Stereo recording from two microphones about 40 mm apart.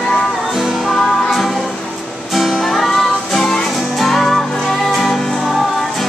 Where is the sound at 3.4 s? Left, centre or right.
Centre.